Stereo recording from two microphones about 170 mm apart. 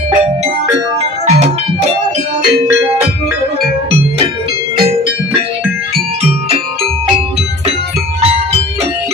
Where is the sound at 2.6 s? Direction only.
15° right (ahead or behind).